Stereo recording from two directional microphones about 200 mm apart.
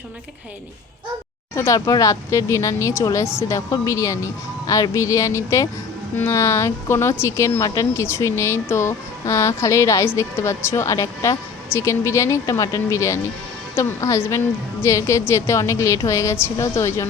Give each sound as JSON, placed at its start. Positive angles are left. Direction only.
{"t": 1.5, "sound": "speech", "side_deg": 15}